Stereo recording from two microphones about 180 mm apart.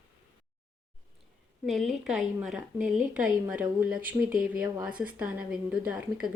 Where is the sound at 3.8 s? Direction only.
10° right (ahead or behind).